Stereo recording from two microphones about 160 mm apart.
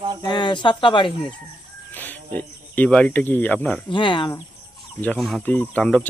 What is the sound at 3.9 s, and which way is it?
Speech, 30° left (ahead or behind).